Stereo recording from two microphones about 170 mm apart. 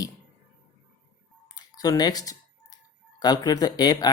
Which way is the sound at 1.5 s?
25° left (ahead or behind).